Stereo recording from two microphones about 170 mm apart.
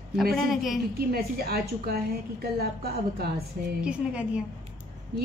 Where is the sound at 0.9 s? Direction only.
65° right (ahead or behind).